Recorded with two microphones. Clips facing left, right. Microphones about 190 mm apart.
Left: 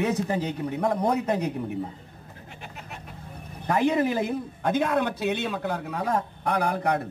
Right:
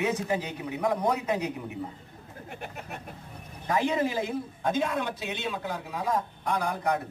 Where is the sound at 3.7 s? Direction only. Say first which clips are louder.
Left 4 dB; 60° left (ahead or behind).